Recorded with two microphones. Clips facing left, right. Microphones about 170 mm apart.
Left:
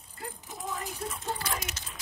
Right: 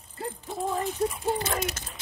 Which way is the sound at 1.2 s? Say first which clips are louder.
Right 7 dB; 20° right (ahead or behind).